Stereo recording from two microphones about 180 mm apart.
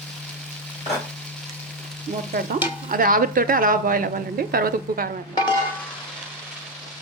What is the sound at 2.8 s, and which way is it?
A woman's voice, 50° right (ahead or behind).